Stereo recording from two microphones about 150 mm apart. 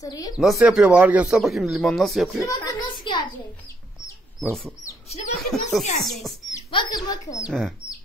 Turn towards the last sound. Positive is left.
turn(degrees=0)  # may be behind; listen again after turning